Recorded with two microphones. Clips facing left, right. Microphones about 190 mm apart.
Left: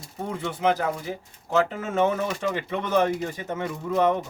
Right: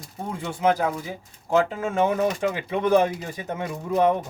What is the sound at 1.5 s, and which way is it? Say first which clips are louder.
A man's voice: right 2 dB; 10° right (ahead or behind).